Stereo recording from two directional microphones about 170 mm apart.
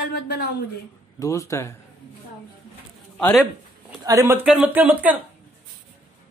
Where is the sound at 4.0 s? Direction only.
20° right (ahead or behind).